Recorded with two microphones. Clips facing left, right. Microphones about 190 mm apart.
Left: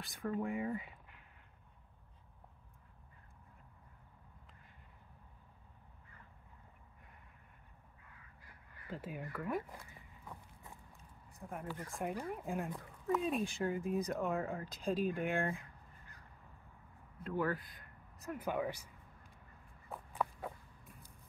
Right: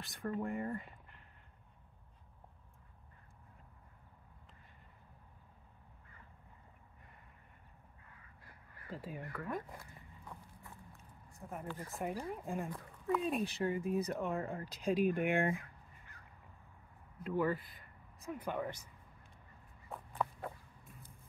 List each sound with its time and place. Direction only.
0.0 s speech: centre (ahead or behind)
8.9 s speech: centre (ahead or behind)
10.6 s a sound: 20° left (ahead or behind)
11.3 s speech: 5° right (ahead or behind)
14.6 s speech: 10° right (ahead or behind)
17.4 s speech: 5° right (ahead or behind)
20.2 s a sound: centre (ahead or behind)